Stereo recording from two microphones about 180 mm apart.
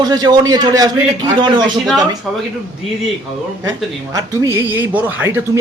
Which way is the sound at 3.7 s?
20° right (ahead or behind).